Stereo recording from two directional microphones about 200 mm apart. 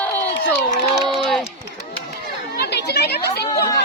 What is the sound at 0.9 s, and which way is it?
Run, centre (ahead or behind).